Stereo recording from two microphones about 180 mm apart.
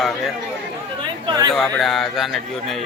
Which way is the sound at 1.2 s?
20° right (ahead or behind).